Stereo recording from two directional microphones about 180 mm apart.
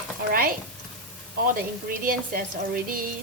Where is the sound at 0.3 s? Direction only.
55° right (ahead or behind).